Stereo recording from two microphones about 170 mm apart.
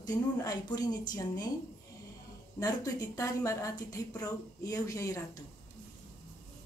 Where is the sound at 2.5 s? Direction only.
20° left (ahead or behind).